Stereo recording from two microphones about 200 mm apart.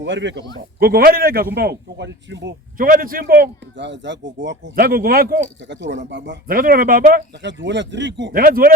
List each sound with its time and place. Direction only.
0.0 s a man's voice: 65° right (ahead or behind)
0.8 s a man's voice: 50° right (ahead or behind)
2.7 s a man's voice: 45° right (ahead or behind); by 6.3 s 60° right (ahead or behind)
6.5 s a man's voice: 45° right (ahead or behind)
7.4 s a man's voice: 60° right (ahead or behind)
8.4 s a man's voice: 45° right (ahead or behind)